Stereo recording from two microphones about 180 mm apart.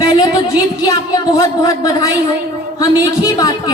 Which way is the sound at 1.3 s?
20° left (ahead or behind).